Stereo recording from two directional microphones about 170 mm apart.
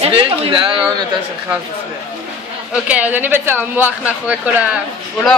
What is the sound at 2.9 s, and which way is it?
Speech, 10° right (ahead or behind).